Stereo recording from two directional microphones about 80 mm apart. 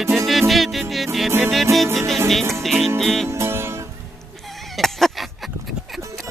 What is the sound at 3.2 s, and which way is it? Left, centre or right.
Music, right.